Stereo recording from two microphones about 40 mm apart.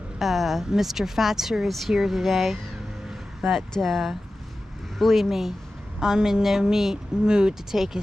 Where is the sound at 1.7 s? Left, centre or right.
Centre.